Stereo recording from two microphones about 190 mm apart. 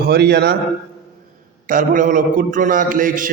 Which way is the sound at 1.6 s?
45° right (ahead or behind).